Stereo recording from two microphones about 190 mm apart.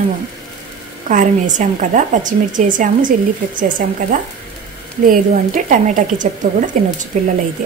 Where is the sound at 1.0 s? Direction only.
40° right (ahead or behind).